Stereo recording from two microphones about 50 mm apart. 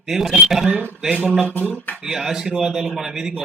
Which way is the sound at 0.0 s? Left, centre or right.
Centre.